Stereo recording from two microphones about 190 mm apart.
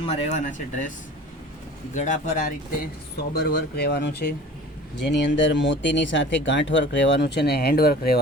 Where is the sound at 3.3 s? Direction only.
60° left (ahead or behind).